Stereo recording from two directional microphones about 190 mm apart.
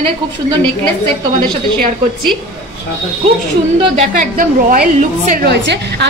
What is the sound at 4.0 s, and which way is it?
A woman's voice, 45° right (ahead or behind).